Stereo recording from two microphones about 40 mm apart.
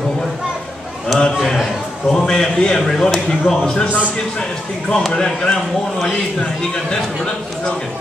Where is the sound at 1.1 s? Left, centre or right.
Centre.